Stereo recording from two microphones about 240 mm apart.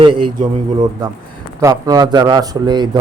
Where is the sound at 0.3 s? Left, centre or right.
Centre.